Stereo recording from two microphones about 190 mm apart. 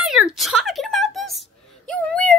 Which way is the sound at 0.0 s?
Centre (ahead or behind).